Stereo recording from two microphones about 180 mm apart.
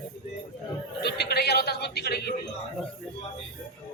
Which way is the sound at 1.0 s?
65° left (ahead or behind).